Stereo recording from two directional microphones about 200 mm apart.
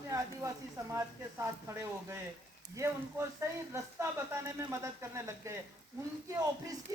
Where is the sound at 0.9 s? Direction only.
15° right (ahead or behind).